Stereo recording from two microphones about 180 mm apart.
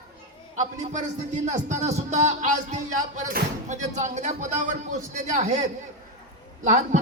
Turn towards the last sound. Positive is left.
turn(degrees=-45)  # may be behind; listen again after turning